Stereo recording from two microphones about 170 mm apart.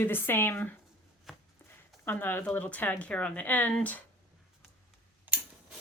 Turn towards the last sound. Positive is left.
turn(degrees=-10)  # may be behind; listen again after turning